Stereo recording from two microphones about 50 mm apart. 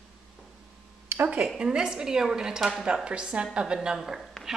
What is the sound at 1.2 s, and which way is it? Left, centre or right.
A woman's voice, right.